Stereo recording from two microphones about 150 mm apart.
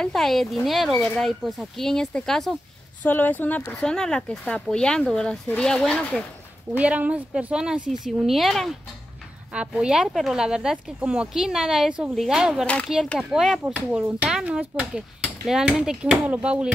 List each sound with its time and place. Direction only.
0.0 s speech: centre (ahead or behind)
6.8 s speech: 10° right (ahead or behind)